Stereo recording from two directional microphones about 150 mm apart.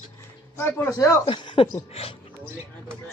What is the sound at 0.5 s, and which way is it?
Speech, 15° left (ahead or behind).